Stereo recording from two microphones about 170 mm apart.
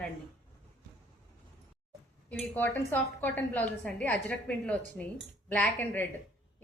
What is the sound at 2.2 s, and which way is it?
A woman's voice, 10° left (ahead or behind).